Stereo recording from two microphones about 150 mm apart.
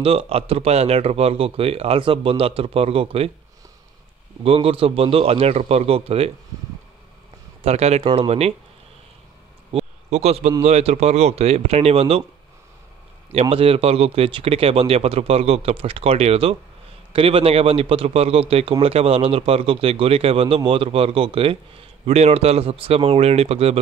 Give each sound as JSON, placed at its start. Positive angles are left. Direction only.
{"t": 0.0, "sound": "a man's voice", "side_deg": -40}
{"t": 4.4, "sound": "a man's voice", "side_deg": -40}
{"t": 7.6, "sound": "a man's voice", "side_deg": -45}
{"t": 9.7, "sound": "a sound", "side_deg": -45}
{"t": 10.6, "sound": "a man's voice", "side_deg": -45}
{"t": 13.3, "sound": "a man's voice", "side_deg": -40}